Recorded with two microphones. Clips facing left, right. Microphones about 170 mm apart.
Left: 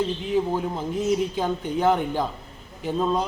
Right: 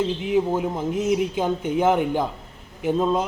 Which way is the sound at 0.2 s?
10° right (ahead or behind).